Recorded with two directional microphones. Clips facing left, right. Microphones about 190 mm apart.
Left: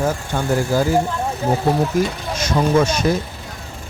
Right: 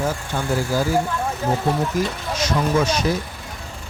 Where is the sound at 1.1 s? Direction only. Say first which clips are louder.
Left 1 dB; 25° left (ahead or behind).